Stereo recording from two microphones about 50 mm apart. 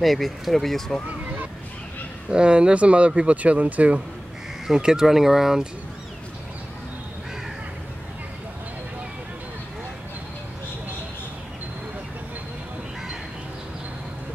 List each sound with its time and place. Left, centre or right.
0.0 s speech: centre
1.0 s a sound: right
2.3 s speech: centre
4.7 s speech: centre